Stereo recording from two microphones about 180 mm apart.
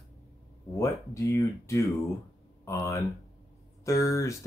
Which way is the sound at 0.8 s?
15° left (ahead or behind).